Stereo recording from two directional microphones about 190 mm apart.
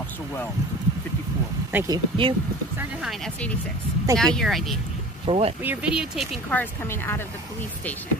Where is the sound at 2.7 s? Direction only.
Centre (ahead or behind).